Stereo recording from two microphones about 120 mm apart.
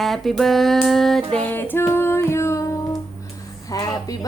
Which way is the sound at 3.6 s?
30° left (ahead or behind).